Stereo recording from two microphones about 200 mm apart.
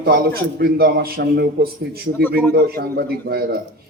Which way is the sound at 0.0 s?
50° right (ahead or behind).